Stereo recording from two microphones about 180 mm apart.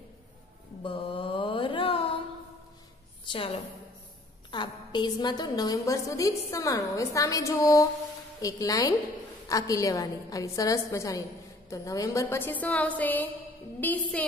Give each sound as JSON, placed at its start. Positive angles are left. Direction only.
{"t": 0.8, "sound": "mantra", "side_deg": 30}
{"t": 3.3, "sound": "a woman's voice", "side_deg": 30}